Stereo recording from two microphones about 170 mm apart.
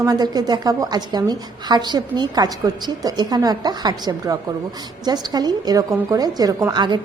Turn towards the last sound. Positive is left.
turn(degrees=-25)  # may be behind; listen again after turning